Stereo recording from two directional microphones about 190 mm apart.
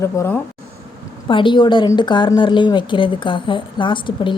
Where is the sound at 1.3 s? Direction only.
25° left (ahead or behind).